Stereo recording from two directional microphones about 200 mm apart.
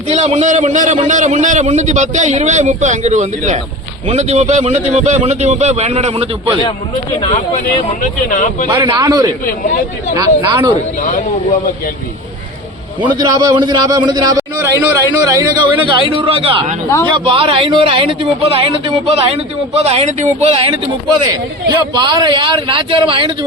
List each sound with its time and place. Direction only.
0.1 s a man's voice: 35° right (ahead or behind)
8.3 s speech: 40° left (ahead or behind)
8.6 s a man's voice: 25° right (ahead or behind)
13.1 s a man's voice: 20° right (ahead or behind); by 20.7 s 35° right (ahead or behind)
21.9 s a man's voice: 20° right (ahead or behind)